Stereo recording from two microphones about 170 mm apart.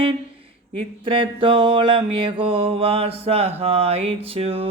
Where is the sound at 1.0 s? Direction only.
30° right (ahead or behind).